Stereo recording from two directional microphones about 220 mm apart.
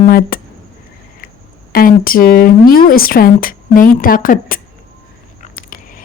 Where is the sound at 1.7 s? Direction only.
40° left (ahead or behind).